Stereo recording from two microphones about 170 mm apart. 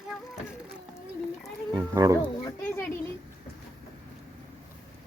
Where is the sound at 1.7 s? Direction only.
20° right (ahead or behind).